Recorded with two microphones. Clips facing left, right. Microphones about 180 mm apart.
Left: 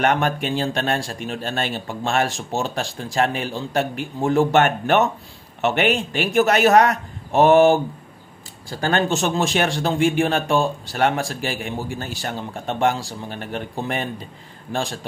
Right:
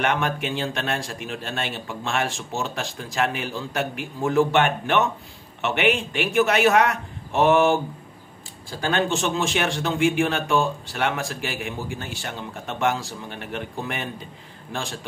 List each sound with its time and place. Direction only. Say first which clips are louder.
0.0 s speech: left 4 dB; 40° left (ahead or behind)
8.8 s speech: left 3 dB; 45° left (ahead or behind)